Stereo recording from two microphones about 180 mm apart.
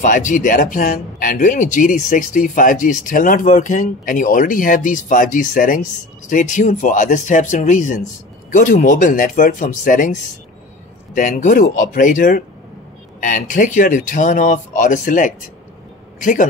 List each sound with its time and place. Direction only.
0.0 s speech: 45° left (ahead or behind)
11.1 s speech: 45° left (ahead or behind)
13.5 s a man's voice: 45° left (ahead or behind)